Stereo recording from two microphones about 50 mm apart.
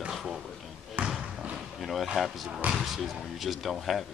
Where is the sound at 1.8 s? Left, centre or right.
Centre.